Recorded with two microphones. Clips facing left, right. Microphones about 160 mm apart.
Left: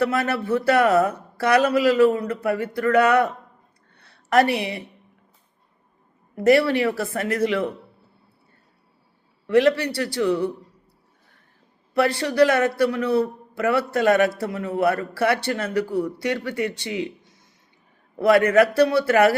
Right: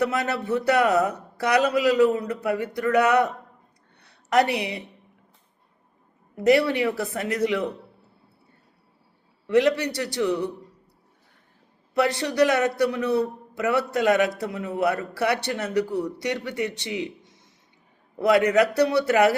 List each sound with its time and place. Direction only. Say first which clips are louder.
0.0 s a man's voice: left 2 dB; 20° right (ahead or behind)
3.9 s a sound: left 2 dB; 20° right (ahead or behind)
6.3 s a man's voice: left 2 dB; 20° right (ahead or behind)
9.5 s a man's voice: left 2 dB; 20° right (ahead or behind)
11.9 s a man's voice: left 3 dB; 20° right (ahead or behind)